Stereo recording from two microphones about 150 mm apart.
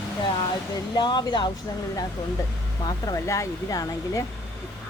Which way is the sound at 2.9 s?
20° left (ahead or behind).